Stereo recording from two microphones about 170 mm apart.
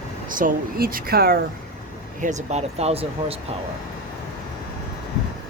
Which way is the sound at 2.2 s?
40° right (ahead or behind).